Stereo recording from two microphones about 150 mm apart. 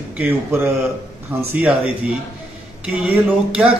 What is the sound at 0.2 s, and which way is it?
A man's voice, 15° right (ahead or behind).